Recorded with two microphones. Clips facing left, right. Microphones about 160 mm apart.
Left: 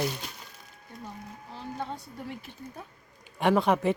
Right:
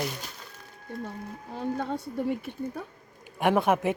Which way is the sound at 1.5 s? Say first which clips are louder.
Right 6 dB; 50° right (ahead or behind).